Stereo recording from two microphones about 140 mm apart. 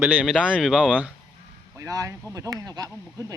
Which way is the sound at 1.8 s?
25° right (ahead or behind).